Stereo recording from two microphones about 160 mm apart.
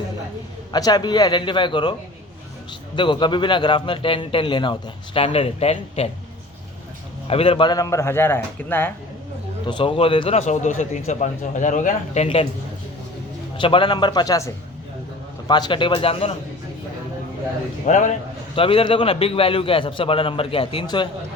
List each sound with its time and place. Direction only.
0.7 s a man's voice: 25° left (ahead or behind)
7.3 s a man's voice: 35° left (ahead or behind); by 8.9 s 15° left (ahead or behind)
9.6 s speech: 30° left (ahead or behind)
13.6 s a man's voice: 30° left (ahead or behind)
17.8 s speech: 50° left (ahead or behind)
18.5 s a man's voice: 35° left (ahead or behind)